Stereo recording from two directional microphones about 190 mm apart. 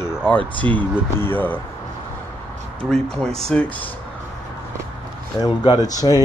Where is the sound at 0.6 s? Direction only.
10° left (ahead or behind).